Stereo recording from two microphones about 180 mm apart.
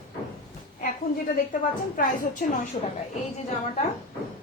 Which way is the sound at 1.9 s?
50° left (ahead or behind).